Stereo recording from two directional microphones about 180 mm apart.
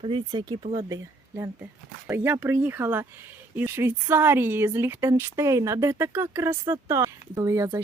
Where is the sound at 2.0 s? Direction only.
10° right (ahead or behind).